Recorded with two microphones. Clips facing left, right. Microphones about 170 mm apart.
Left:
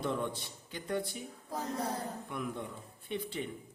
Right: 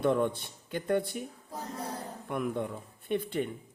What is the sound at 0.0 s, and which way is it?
Speech, 55° right (ahead or behind).